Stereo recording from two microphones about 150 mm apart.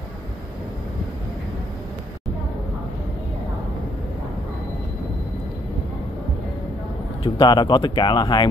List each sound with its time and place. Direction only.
7.2 s speech: 30° left (ahead or behind)